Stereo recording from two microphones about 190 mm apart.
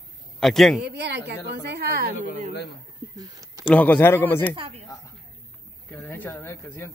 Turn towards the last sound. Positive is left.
turn(degrees=15)  # may be behind; listen again after turning